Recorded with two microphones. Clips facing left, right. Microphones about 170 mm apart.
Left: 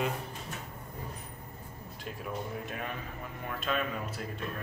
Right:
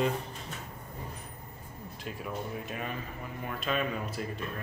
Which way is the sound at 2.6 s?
Centre (ahead or behind).